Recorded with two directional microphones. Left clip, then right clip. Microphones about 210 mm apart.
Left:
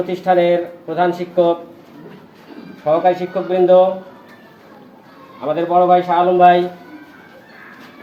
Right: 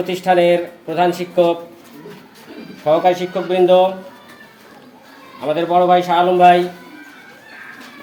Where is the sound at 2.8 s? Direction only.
10° right (ahead or behind).